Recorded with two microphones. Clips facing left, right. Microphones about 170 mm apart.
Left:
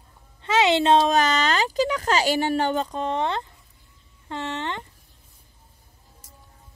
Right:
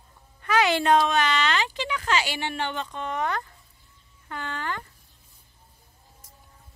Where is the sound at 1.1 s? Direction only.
40° left (ahead or behind); by 4.8 s 25° left (ahead or behind).